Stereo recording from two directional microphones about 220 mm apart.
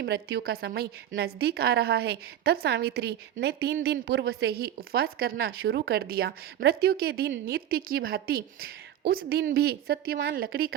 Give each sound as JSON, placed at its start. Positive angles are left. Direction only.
{"t": 0.0, "sound": "a woman's voice", "side_deg": -45}